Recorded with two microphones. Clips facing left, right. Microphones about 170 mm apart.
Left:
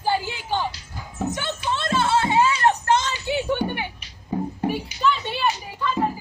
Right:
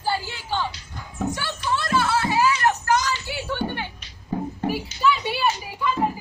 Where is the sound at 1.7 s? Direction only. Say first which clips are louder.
Even; 25° left (ahead or behind).